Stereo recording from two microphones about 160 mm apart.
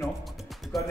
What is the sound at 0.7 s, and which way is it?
Speech, centre (ahead or behind).